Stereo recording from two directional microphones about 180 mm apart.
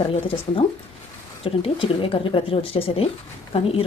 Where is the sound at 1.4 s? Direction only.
30° left (ahead or behind).